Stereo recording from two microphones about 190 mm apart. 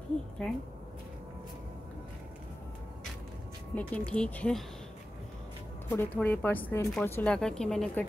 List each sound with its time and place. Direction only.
3.7 s a woman's voice: 5° left (ahead or behind)
5.9 s speech: 10° left (ahead or behind)